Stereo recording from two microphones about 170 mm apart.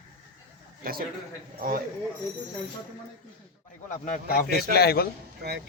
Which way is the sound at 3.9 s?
50° left (ahead or behind).